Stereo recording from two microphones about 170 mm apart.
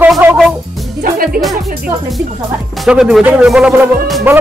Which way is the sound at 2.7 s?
5° right (ahead or behind).